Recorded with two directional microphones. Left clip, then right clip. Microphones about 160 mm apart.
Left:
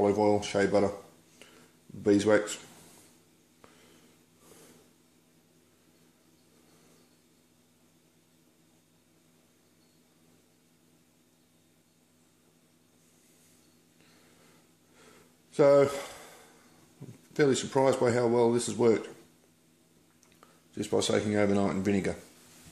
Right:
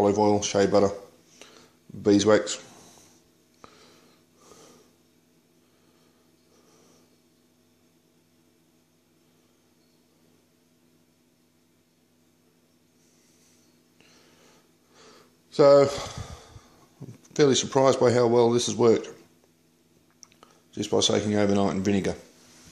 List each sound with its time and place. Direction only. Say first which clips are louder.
0.0 s speech: right 4 dB; 25° right (ahead or behind)
2.0 s speech: right 4 dB; 25° right (ahead or behind)
15.5 s speech: right 5 dB; 25° right (ahead or behind)
17.3 s speech: right 5 dB; 30° right (ahead or behind)
20.3 s speech: right 4 dB; 25° right (ahead or behind)